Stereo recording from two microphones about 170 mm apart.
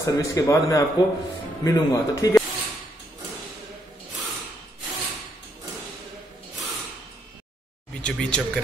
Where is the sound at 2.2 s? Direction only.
20° left (ahead or behind).